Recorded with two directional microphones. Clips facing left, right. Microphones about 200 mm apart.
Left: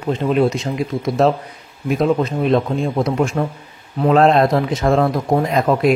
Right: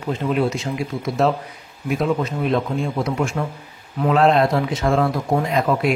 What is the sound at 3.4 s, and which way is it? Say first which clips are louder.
A man's voice: left 4 dB; 40° left (ahead or behind).